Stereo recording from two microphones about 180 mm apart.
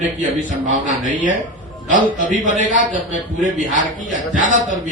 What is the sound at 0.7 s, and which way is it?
Speech, 45° right (ahead or behind).